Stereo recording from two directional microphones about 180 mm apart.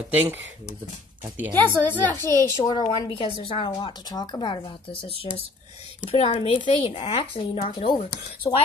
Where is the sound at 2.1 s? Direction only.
15° left (ahead or behind); by 8.0 s 30° left (ahead or behind).